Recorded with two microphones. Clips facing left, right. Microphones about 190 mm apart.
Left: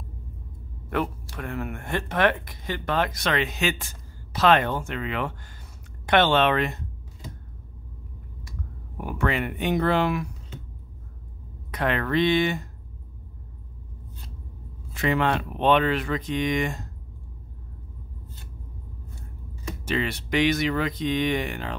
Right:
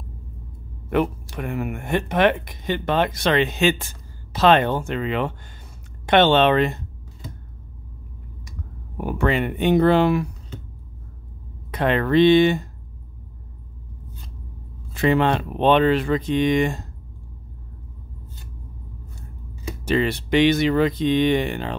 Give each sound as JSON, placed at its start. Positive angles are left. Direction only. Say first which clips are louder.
{"t": 0.8, "sound": "speech", "louder": "right 6 dB", "side_deg": -20}
{"t": 8.9, "sound": "speech", "louder": "right 5 dB", "side_deg": -30}
{"t": 11.7, "sound": "speech", "louder": "right 6 dB", "side_deg": -25}
{"t": 15.0, "sound": "speech", "louder": "right 5 dB", "side_deg": -30}
{"t": 19.8, "sound": "speech", "louder": "right 7 dB", "side_deg": -35}